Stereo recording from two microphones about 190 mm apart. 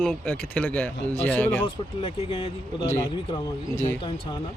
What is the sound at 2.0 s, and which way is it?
Speech, 25° left (ahead or behind).